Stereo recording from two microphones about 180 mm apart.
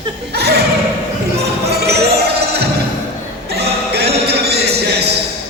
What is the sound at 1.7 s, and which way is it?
Basketball bounce, 65° right (ahead or behind).